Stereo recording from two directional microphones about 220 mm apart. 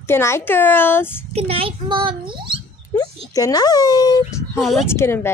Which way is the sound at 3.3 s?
15° left (ahead or behind).